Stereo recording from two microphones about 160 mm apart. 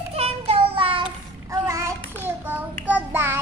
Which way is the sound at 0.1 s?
40° right (ahead or behind).